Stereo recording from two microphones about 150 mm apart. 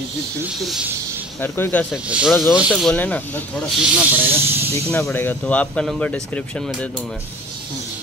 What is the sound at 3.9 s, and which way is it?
Snake, 10° right (ahead or behind).